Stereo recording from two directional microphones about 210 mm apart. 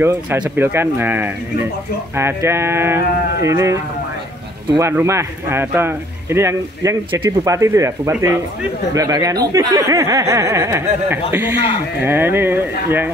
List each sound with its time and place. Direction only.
0.0 s speech: 10° right (ahead or behind)
12.0 s speech: 10° right (ahead or behind)